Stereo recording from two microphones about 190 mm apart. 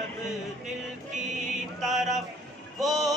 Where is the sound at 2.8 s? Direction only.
20° right (ahead or behind).